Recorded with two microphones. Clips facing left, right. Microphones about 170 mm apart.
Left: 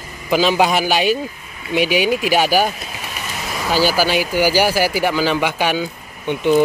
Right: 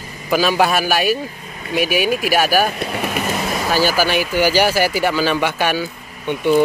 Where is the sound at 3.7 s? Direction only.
15° left (ahead or behind).